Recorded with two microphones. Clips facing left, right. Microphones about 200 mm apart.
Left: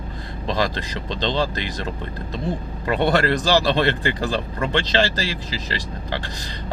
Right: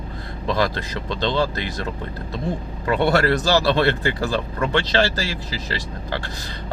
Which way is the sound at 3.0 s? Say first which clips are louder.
Right 1 dB; 20° left (ahead or behind).